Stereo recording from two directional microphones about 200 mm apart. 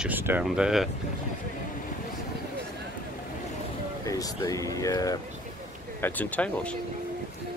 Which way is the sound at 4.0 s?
15° left (ahead or behind).